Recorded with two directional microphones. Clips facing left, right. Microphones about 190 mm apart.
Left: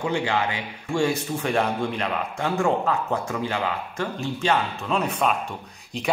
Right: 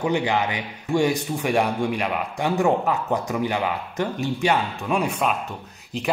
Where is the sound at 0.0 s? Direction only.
20° right (ahead or behind).